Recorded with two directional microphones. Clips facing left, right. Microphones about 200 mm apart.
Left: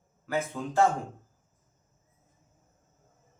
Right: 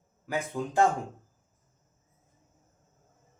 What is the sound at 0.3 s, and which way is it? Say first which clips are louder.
Speech: left 1 dB; 15° right (ahead or behind).